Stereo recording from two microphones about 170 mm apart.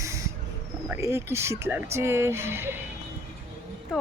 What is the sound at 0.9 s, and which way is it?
Speech, 15° right (ahead or behind).